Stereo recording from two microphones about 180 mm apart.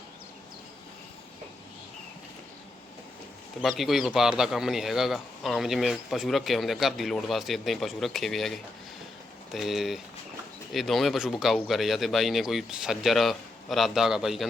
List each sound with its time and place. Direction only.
3.6 s speech: centre (ahead or behind)